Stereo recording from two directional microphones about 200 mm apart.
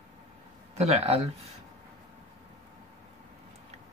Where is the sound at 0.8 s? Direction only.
30° right (ahead or behind).